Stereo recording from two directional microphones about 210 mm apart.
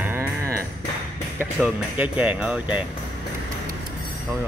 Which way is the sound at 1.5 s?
5° right (ahead or behind).